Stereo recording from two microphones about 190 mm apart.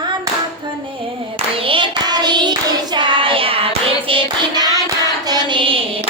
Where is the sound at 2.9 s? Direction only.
25° right (ahead or behind).